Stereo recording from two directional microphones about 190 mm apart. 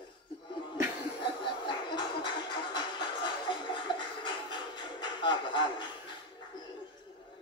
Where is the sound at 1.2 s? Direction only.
25° left (ahead or behind).